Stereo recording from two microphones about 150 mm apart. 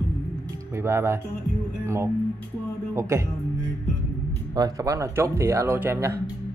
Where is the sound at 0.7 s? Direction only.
20° right (ahead or behind).